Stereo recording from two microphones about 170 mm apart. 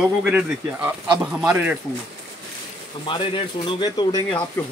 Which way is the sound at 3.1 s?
30° left (ahead or behind).